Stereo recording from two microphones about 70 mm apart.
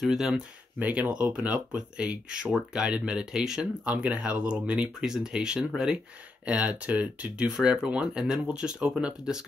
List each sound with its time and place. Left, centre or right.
0.0 s speech: centre
0.3 s speech: right
3.8 s speech: centre